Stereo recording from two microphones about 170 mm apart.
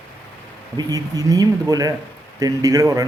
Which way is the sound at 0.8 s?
20° right (ahead or behind).